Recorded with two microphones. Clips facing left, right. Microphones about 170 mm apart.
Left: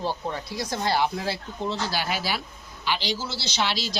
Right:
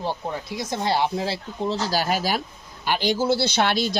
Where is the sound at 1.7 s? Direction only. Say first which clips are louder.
Right 6 dB; 40° right (ahead or behind).